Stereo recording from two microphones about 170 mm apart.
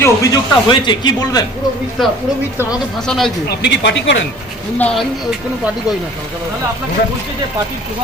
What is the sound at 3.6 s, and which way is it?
Speech, 90° left.